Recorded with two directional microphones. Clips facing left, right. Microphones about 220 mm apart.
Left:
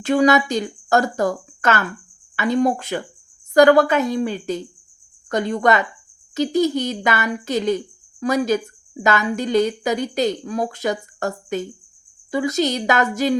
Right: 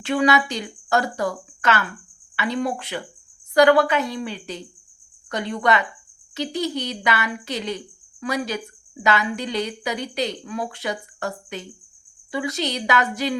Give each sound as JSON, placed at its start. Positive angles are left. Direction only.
{"t": 0.0, "sound": "a woman's voice", "side_deg": 45}